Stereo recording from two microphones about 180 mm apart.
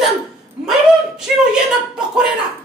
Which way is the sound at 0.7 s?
5° right (ahead or behind).